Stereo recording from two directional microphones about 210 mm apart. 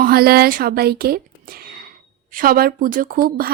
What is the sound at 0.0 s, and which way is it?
A woman's voice, 45° right (ahead or behind).